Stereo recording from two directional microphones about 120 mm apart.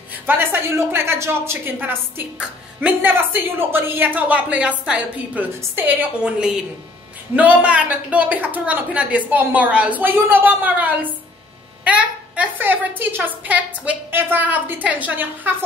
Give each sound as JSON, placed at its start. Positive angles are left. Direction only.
{"t": 0.1, "sound": "speech", "side_deg": -15}